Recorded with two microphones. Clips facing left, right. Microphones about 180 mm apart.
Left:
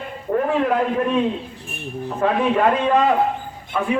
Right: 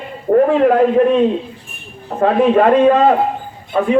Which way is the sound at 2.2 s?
45° right (ahead or behind).